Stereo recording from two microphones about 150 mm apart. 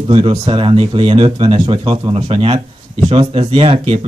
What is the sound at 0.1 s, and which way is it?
Speech, 35° right (ahead or behind).